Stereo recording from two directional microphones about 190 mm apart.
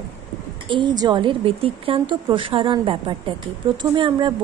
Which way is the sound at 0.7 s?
25° right (ahead or behind).